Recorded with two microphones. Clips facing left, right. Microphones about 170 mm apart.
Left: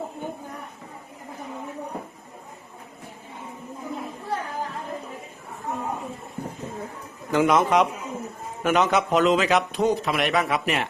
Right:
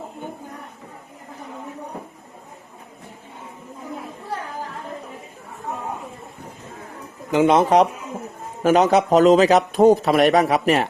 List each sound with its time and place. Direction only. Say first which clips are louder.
7.3 s speech: right 4 dB; 20° right (ahead or behind)
7.5 s a man's voice: right 5 dB; 35° right (ahead or behind)